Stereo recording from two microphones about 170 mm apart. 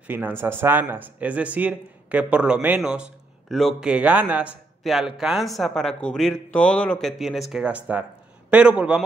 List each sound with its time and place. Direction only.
0.0 s a man's voice: 10° right (ahead or behind)